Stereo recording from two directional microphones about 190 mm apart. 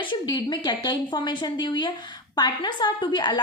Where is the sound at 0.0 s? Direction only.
25° left (ahead or behind).